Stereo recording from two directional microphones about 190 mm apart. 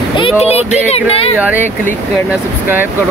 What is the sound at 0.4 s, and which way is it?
Speech, 35° left (ahead or behind).